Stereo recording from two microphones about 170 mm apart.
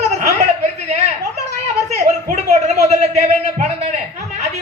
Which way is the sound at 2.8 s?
40° right (ahead or behind).